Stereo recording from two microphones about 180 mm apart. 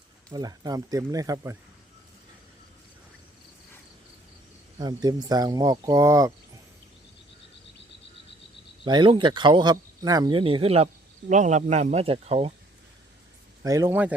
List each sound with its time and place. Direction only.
0.3 s speech: 20° right (ahead or behind)
4.8 s speech: 20° right (ahead or behind)
8.8 s speech: 25° right (ahead or behind)
13.6 s a man's voice: 15° right (ahead or behind)